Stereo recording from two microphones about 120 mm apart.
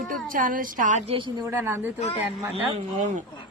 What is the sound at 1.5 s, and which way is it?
Speech, 20° right (ahead or behind).